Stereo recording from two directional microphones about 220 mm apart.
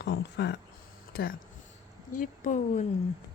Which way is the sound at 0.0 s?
50° left (ahead or behind).